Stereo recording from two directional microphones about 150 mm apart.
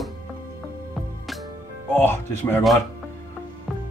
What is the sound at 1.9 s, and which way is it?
Speech, 15° left (ahead or behind).